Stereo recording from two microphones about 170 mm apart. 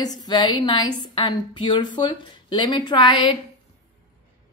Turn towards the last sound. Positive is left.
turn(degrees=30)  # may be behind; listen again after turning